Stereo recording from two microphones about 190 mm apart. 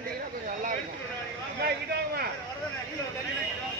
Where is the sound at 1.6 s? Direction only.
60° right (ahead or behind).